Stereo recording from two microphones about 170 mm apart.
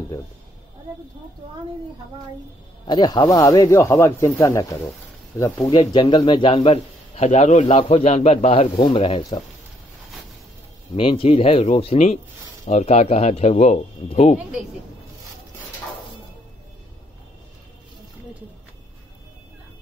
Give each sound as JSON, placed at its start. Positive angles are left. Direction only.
{"t": 2.9, "sound": "speech", "side_deg": 25}
{"t": 8.7, "sound": "speech", "side_deg": 30}
{"t": 11.0, "sound": "speech", "side_deg": 30}